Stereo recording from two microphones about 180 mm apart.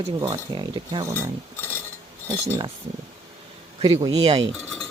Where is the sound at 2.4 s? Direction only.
25° right (ahead or behind).